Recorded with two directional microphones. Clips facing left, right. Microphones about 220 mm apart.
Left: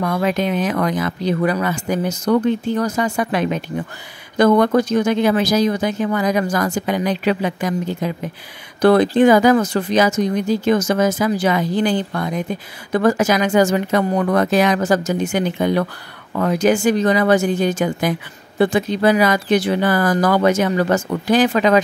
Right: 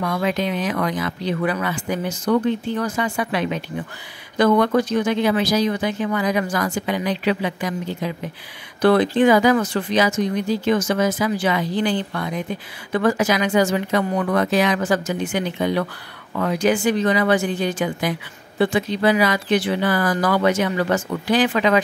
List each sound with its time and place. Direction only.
0.0 s speech: 45° left (ahead or behind)